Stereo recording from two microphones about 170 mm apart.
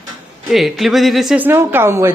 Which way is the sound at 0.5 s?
Centre (ahead or behind).